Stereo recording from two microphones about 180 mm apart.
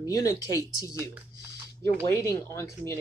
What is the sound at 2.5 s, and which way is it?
Speech, 15° left (ahead or behind).